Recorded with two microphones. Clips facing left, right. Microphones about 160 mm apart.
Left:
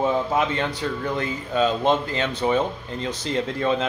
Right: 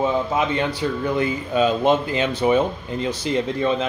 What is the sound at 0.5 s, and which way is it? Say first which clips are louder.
A man's voice: right 3 dB; 5° right (ahead or behind).